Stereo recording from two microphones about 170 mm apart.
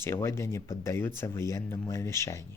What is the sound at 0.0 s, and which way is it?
Speech, 15° left (ahead or behind).